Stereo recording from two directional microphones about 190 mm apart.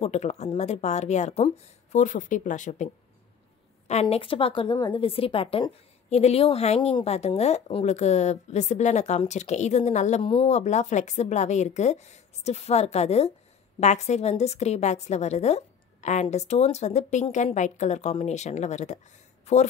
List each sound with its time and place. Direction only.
0.0 s a woman's voice: 35° left (ahead or behind)